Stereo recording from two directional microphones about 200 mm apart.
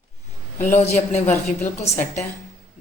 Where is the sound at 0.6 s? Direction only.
40° left (ahead or behind).